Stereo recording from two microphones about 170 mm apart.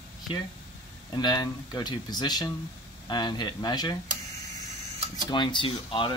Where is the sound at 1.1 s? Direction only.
20° left (ahead or behind).